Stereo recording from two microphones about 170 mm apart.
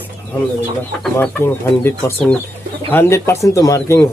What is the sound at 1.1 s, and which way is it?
Speech, 15° left (ahead or behind).